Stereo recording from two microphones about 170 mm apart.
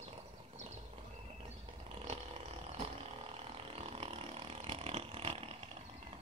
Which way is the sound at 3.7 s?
35° right (ahead or behind).